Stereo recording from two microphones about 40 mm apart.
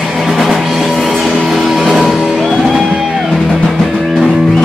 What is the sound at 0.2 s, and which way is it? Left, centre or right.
Music, centre.